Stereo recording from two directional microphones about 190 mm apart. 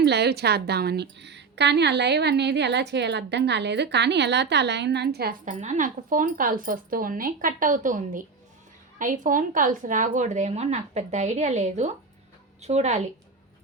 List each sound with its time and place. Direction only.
0.0 s a woman's voice: 60° right (ahead or behind); by 13.0 s 35° right (ahead or behind)